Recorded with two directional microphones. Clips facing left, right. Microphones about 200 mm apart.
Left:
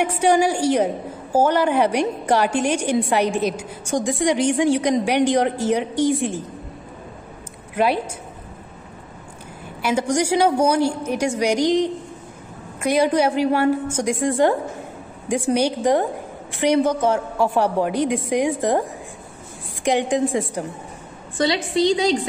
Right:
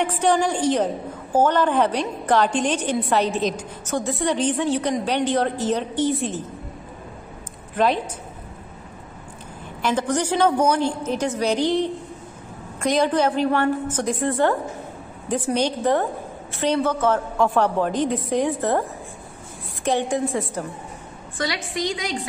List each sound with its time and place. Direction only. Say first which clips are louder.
0.0 s a woman's voice: left 3 dB; 10° left (ahead or behind)
7.7 s a woman's voice: left 1 dB; 10° left (ahead or behind)
9.8 s a woman's voice: left 2 dB; 10° left (ahead or behind)
15.5 s a woman's voice: left 2 dB; 10° left (ahead or behind)
21.4 s a woman's voice: left 7 dB; 25° left (ahead or behind)